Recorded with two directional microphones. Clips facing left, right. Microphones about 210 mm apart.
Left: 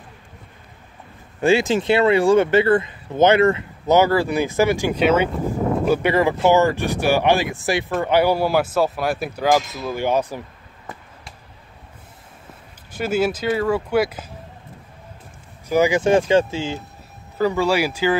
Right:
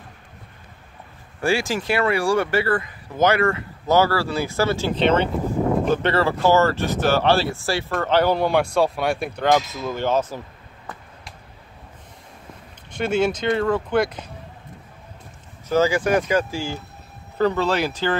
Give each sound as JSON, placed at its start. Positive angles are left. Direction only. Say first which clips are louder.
{"t": 1.4, "sound": "speech", "louder": "left 5 dB", "side_deg": 20}
{"t": 12.9, "sound": "speech", "louder": "even", "side_deg": 5}
{"t": 15.7, "sound": "speech", "louder": "left 2 dB", "side_deg": 15}
{"t": 17.4, "sound": "speech", "louder": "left 1 dB", "side_deg": 10}